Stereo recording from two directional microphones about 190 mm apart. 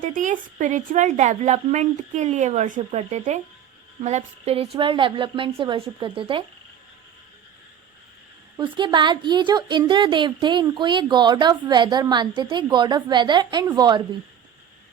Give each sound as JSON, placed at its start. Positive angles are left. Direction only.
{"t": 0.0, "sound": "speech", "side_deg": -45}
{"t": 8.5, "sound": "speech", "side_deg": -25}